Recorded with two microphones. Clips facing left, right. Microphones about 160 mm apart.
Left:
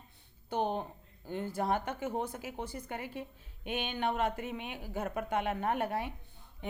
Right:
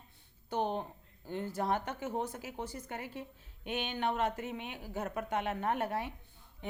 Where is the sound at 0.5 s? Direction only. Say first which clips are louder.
Left 1 dB; 15° left (ahead or behind).